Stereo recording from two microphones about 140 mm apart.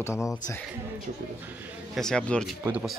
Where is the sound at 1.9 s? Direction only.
5° left (ahead or behind).